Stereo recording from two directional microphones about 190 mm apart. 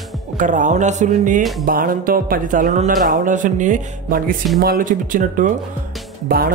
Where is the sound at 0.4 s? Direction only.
40° right (ahead or behind).